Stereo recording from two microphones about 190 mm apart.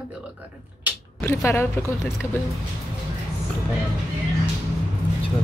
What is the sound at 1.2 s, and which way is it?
A woman's voice, 15° left (ahead or behind).